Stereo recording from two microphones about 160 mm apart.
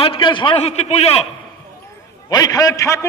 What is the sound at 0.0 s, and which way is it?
A man's voice, 35° left (ahead or behind).